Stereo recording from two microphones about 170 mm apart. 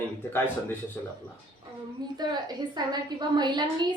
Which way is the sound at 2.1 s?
25° right (ahead or behind).